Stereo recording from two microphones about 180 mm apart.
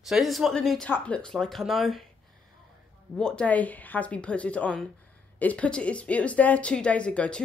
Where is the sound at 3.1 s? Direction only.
5° left (ahead or behind).